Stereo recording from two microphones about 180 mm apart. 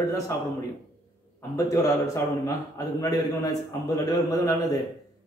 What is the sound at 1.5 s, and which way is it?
A man's voice, 15° left (ahead or behind).